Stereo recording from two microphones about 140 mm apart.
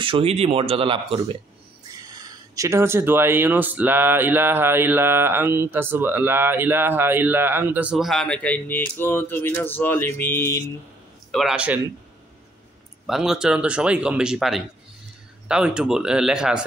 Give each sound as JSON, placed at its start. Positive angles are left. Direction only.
{"t": 0.0, "sound": "speech", "side_deg": -40}
{"t": 1.9, "sound": "speech", "side_deg": -25}
{"t": 11.3, "sound": "speech", "side_deg": -5}
{"t": 13.0, "sound": "speech", "side_deg": 0}